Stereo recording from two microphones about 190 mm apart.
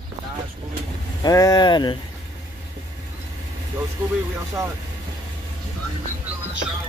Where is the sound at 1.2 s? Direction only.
20° left (ahead or behind).